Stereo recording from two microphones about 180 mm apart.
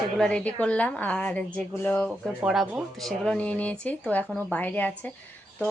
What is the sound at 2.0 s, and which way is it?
A woman's voice, 5° right (ahead or behind).